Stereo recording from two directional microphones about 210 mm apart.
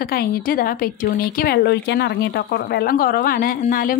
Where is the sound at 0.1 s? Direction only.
45° left (ahead or behind).